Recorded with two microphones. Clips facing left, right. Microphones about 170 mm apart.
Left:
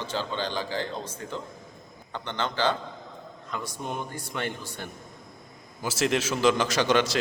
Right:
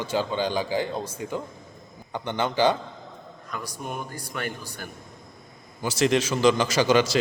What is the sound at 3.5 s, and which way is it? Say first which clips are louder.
Speech: even; 25° left (ahead or behind).